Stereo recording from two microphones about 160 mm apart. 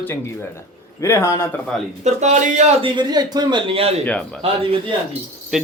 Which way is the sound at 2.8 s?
25° right (ahead or behind).